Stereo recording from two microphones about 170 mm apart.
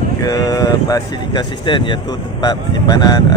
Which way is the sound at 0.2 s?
20° left (ahead or behind).